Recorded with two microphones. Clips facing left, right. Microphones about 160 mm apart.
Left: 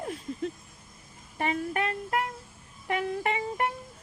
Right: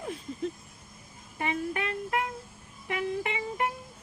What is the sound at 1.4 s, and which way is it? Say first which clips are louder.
A woman's voice: left 2 dB; 40° left (ahead or behind).